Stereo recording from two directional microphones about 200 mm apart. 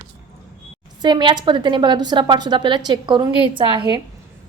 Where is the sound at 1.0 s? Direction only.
20° right (ahead or behind).